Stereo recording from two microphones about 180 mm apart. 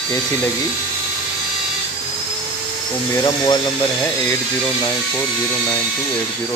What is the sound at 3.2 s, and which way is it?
Speech, 20° left (ahead or behind).